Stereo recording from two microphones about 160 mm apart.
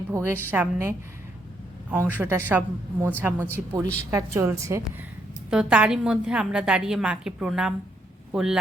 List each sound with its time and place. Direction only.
0.1 s a woman's voice: 15° right (ahead or behind)
5.5 s a woman's voice: 5° right (ahead or behind)